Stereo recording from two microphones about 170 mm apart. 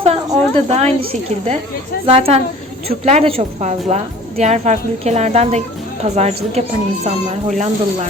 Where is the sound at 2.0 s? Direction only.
35° right (ahead or behind).